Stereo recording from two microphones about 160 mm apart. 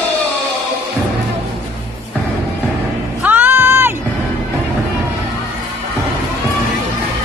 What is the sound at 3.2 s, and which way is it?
Music, 10° right (ahead or behind).